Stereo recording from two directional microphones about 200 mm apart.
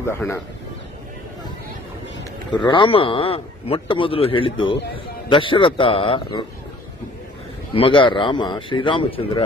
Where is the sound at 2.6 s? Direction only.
25° left (ahead or behind).